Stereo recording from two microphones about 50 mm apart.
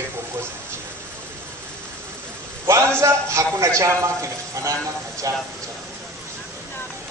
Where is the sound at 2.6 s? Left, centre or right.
Right.